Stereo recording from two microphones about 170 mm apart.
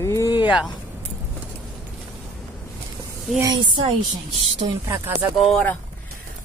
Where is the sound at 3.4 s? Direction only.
25° right (ahead or behind).